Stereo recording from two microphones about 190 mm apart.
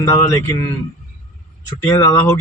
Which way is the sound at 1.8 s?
20° left (ahead or behind).